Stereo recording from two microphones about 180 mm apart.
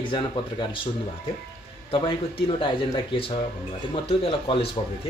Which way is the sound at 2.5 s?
30° left (ahead or behind).